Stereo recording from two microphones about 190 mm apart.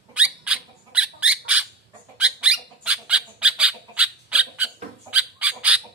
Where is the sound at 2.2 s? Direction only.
5° right (ahead or behind).